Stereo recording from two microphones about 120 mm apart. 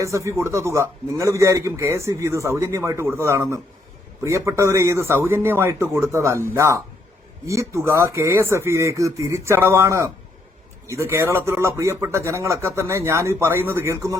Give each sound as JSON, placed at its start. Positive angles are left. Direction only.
{"t": 0.0, "sound": "a man's voice", "side_deg": -25}